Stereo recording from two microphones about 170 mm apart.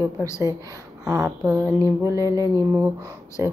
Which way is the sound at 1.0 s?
20° right (ahead or behind).